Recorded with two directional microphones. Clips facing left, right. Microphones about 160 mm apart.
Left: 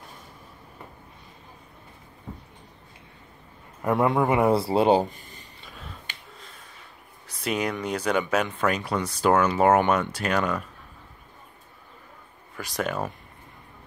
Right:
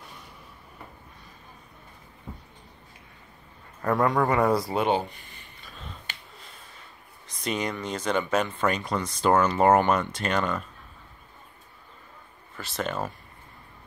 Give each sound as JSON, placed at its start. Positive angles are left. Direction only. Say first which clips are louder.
{"t": 3.8, "sound": "speech", "louder": "left 1 dB", "side_deg": 20}
{"t": 5.7, "sound": "finger snapping", "louder": "even", "side_deg": 5}
{"t": 7.4, "sound": "speech", "louder": "left 2 dB", "side_deg": 5}
{"t": 12.5, "sound": "speech", "louder": "left 2 dB", "side_deg": 15}